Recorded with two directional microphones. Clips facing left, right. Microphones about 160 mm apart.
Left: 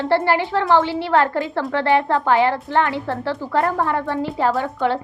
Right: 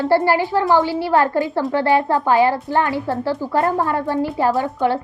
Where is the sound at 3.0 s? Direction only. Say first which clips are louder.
Right 3 dB; 5° right (ahead or behind).